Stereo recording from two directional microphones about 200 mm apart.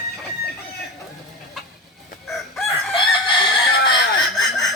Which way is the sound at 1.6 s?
Centre (ahead or behind).